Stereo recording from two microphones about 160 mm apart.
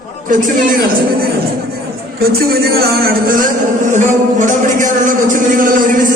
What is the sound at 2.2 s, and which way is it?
A man's voice, 75° right (ahead or behind).